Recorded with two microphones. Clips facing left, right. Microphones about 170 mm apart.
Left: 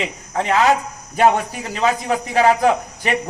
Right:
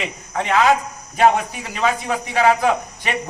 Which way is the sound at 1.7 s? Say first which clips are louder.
Left 2 dB; 35° left (ahead or behind).